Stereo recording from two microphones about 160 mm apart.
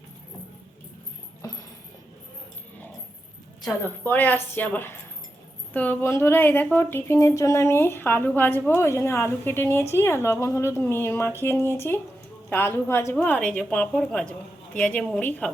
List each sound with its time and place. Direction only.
3.8 s speech: 10° left (ahead or behind)